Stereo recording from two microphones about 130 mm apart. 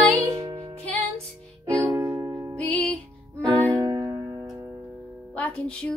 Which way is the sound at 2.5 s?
10° left (ahead or behind).